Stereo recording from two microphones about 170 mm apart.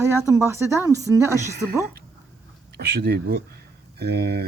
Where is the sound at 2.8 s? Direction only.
70° right (ahead or behind).